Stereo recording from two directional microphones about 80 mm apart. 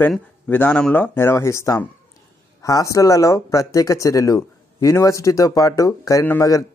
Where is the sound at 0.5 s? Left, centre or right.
Left.